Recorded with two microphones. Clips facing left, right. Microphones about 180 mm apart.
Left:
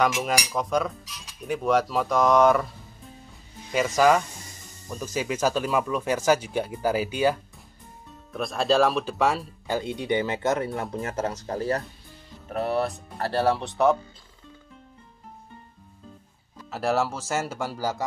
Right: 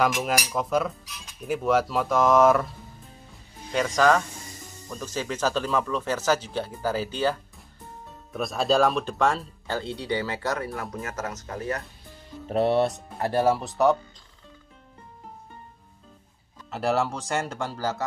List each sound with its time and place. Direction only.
0.0 s cutlery: centre (ahead or behind)
3.7 s speech: 5° left (ahead or behind)
8.3 s speech: centre (ahead or behind); by 11.8 s 30° left (ahead or behind)
12.4 s speech: 30° right (ahead or behind)
13.3 s cutlery: 10° right (ahead or behind)
16.7 s cutlery: centre (ahead or behind)